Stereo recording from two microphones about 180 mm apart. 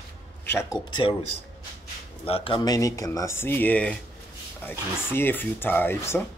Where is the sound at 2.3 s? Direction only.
30° left (ahead or behind); by 3.9 s 10° left (ahead or behind).